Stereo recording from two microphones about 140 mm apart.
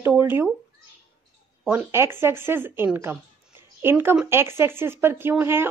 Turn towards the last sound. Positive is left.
turn(degrees=-15)  # may be behind; listen again after turning